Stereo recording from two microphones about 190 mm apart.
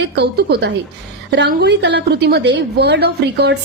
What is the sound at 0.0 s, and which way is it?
A woman's voice, 60° right (ahead or behind).